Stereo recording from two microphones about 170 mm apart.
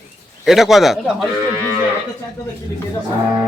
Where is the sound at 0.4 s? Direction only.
Centre (ahead or behind).